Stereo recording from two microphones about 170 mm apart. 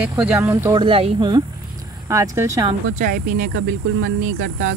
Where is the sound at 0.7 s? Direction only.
30° right (ahead or behind).